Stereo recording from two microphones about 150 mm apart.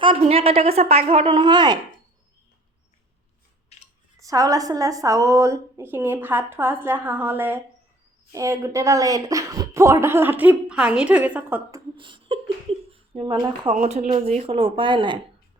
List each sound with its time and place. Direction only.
0.0 s a woman's voice: 40° right (ahead or behind)
4.2 s a woman's voice: 20° right (ahead or behind)
11.9 s a sound: 35° right (ahead or behind)
12.9 s speech: 35° right (ahead or behind)
13.8 s a woman's voice: 50° right (ahead or behind); by 15.2 s 30° right (ahead or behind)